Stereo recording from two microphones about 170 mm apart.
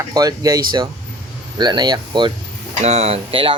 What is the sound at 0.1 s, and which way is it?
Speech, 20° right (ahead or behind).